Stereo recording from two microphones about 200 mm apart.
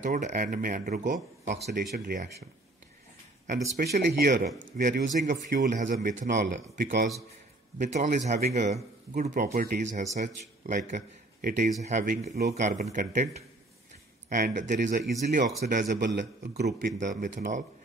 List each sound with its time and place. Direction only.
0.0 s speech: 40° right (ahead or behind)
1.8 s a man's voice: 50° right (ahead or behind)
3.7 s a man's voice: 50° right (ahead or behind)
16.2 s a man's voice: 55° right (ahead or behind); by 17.6 s 40° right (ahead or behind)